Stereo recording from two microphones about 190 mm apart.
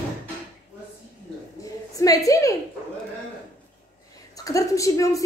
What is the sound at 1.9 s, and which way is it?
Speech, 20° left (ahead or behind).